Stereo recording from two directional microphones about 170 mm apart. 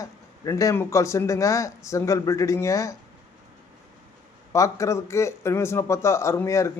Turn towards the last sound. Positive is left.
turn(degrees=15)  # may be behind; listen again after turning